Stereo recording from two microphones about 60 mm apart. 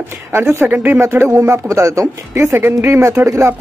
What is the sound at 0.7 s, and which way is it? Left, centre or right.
Speech, right.